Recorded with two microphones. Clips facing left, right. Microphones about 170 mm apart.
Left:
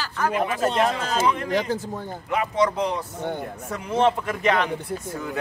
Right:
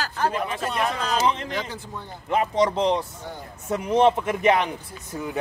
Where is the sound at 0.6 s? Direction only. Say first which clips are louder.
Left 6 dB; 25° left (ahead or behind).